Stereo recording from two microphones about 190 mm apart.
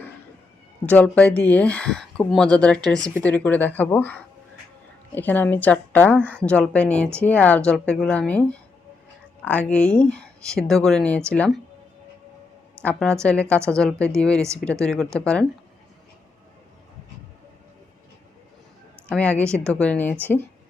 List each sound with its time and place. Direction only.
0.9 s a woman's voice: 5° left (ahead or behind)
12.8 s speech: 5° left (ahead or behind)
19.0 s a woman's voice: 5° left (ahead or behind)